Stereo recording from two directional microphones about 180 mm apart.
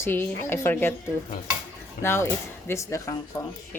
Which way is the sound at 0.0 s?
10° left (ahead or behind).